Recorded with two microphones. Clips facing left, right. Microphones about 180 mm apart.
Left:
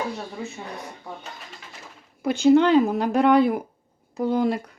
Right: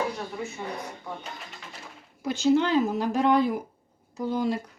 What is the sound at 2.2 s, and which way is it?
Speech, 60° left (ahead or behind).